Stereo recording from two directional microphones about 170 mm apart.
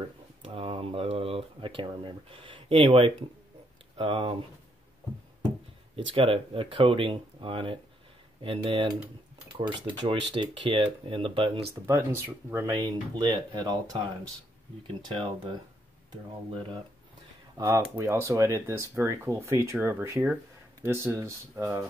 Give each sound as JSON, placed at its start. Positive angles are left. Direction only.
{"t": 0.6, "sound": "speech", "side_deg": -35}
{"t": 6.1, "sound": "speech", "side_deg": -30}
{"t": 11.7, "sound": "speech", "side_deg": -15}
{"t": 15.0, "sound": "speech", "side_deg": -30}
{"t": 17.6, "sound": "speech", "side_deg": -15}